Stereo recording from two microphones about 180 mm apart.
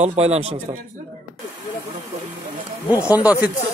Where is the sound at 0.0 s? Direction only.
35° right (ahead or behind).